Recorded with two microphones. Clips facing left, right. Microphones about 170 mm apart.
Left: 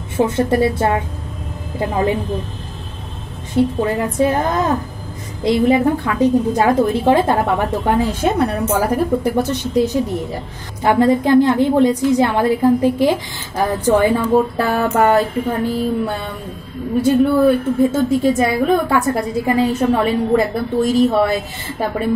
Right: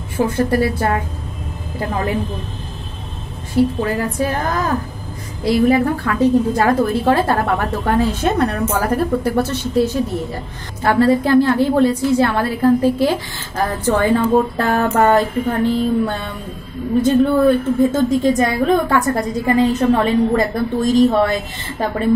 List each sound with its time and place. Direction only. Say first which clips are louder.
0.2 s a woman's voice: left 1 dB; 25° left (ahead or behind)
3.5 s a woman's voice: even; 25° left (ahead or behind)
17.4 s a woman's voice: even; 5° left (ahead or behind)